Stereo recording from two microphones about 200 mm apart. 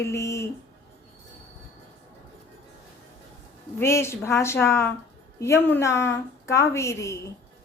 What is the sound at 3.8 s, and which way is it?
A woman's voice, 15° left (ahead or behind).